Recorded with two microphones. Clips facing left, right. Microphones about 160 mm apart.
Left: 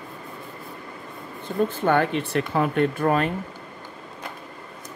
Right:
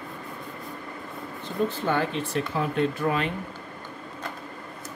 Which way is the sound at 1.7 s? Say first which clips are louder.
Left 5 dB; 55° left (ahead or behind).